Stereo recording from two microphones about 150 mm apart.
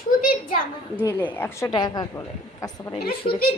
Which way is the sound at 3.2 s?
40° left (ahead or behind).